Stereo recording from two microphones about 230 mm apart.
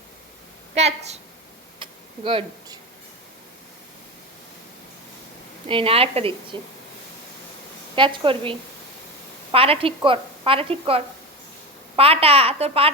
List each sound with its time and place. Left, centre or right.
0.8 s a woman's voice: right
1.8 s a sound: right
5.6 s a woman's voice: right
7.9 s a woman's voice: right